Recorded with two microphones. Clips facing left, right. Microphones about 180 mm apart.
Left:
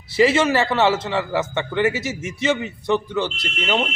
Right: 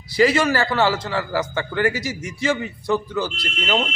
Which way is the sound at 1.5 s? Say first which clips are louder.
Left 2 dB; 25° left (ahead or behind).